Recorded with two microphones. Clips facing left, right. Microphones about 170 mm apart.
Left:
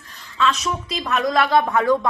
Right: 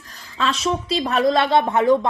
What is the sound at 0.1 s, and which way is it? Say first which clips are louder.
Speech: left 2 dB; 35° right (ahead or behind).